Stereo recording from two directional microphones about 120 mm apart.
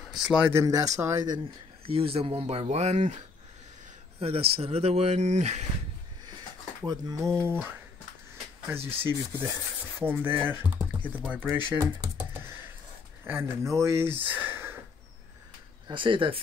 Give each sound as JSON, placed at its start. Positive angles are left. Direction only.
{"t": 0.0, "sound": "a sound", "side_deg": 0}
{"t": 0.5, "sound": "speech", "side_deg": -25}
{"t": 1.9, "sound": "speech", "side_deg": -55}
{"t": 4.2, "sound": "speech", "side_deg": -55}
{"t": 6.8, "sound": "speech", "side_deg": -30}
{"t": 8.6, "sound": "speech", "side_deg": -20}
{"t": 13.2, "sound": "speech", "side_deg": -20}
{"t": 15.9, "sound": "speech", "side_deg": -45}